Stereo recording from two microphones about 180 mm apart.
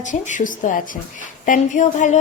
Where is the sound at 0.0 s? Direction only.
45° left (ahead or behind).